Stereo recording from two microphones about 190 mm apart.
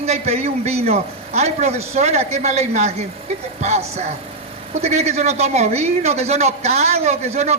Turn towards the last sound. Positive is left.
turn(degrees=-35)  # may be behind; listen again after turning